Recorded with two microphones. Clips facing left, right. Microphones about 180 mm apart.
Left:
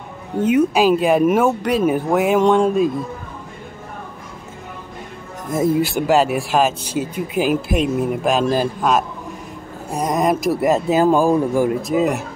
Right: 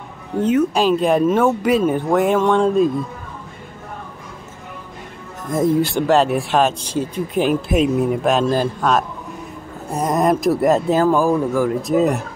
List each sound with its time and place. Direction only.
0.4 s speech: 10° left (ahead or behind)
5.5 s speech: 5° left (ahead or behind)
11.0 s speech: 15° left (ahead or behind)
11.8 s speech: centre (ahead or behind)